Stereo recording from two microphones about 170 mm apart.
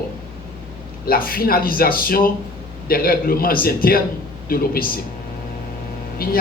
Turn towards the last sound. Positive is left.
turn(degrees=60)  # may be behind; listen again after turning